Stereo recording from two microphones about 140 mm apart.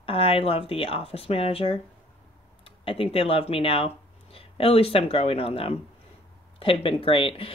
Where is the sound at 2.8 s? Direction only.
40° left (ahead or behind).